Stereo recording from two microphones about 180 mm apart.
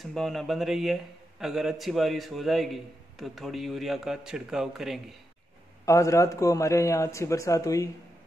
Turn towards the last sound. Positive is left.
turn(degrees=20)  # may be behind; listen again after turning